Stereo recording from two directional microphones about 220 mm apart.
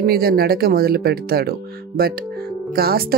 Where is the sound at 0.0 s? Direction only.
45° right (ahead or behind).